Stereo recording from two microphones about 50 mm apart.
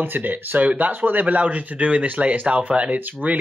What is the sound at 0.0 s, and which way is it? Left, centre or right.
Speech, right.